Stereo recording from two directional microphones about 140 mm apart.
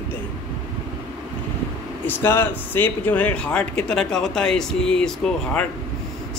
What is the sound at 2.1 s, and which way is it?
Speech, 15° left (ahead or behind).